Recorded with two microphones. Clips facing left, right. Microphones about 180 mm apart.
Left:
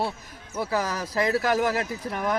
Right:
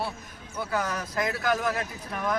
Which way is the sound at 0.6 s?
30° left (ahead or behind).